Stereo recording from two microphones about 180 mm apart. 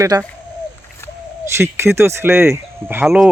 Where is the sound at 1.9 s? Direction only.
15° right (ahead or behind).